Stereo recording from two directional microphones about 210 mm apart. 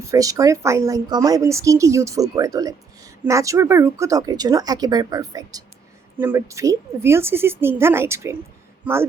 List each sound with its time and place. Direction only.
0.0 s a woman's voice: 15° right (ahead or behind)